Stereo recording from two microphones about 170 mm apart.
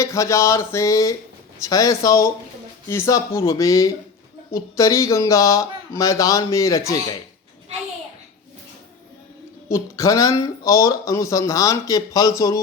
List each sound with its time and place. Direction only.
0.0 s a sound: 15° left (ahead or behind)
1.6 s speech: 20° left (ahead or behind)
9.6 s speech: 15° left (ahead or behind)